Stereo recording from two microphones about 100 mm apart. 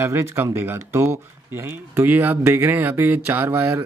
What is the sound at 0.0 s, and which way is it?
Speech, 25° right (ahead or behind).